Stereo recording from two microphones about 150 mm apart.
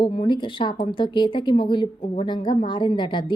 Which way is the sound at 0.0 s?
35° left (ahead or behind).